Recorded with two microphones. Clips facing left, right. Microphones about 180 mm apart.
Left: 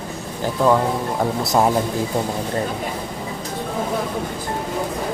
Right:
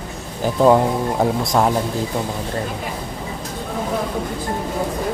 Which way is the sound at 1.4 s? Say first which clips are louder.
Even; 5° left (ahead or behind).